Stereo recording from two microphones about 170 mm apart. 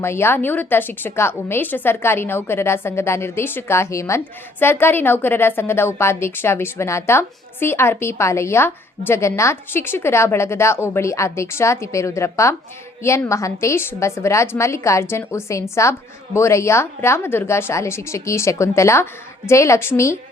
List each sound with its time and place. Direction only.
0.0 s a woman's voice: 15° left (ahead or behind)